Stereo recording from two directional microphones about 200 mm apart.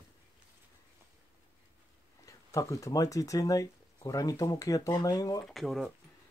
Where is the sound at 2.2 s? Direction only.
15° left (ahead or behind).